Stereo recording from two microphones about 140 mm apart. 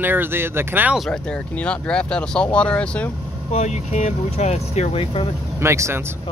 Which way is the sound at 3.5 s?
55° left (ahead or behind).